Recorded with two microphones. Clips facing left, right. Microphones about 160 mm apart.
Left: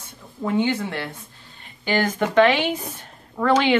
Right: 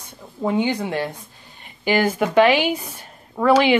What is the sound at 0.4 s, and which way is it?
A woman's voice, 15° right (ahead or behind).